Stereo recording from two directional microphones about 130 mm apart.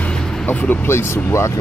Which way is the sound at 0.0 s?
5° left (ahead or behind).